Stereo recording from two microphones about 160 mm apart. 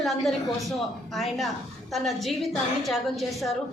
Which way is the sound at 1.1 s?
Centre (ahead or behind).